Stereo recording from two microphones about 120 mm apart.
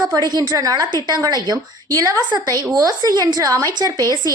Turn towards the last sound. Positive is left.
turn(degrees=-35)  # may be behind; listen again after turning